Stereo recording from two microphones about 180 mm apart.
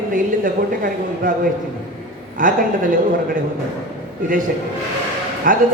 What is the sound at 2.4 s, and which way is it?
Speech, 50° right (ahead or behind).